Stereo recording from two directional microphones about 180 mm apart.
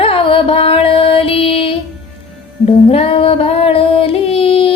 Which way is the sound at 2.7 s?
35° left (ahead or behind).